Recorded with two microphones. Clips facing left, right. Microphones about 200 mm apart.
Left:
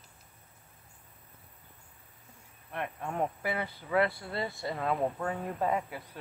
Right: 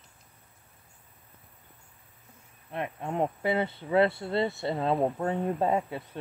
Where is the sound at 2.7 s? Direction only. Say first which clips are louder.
Right 4 dB; 25° right (ahead or behind).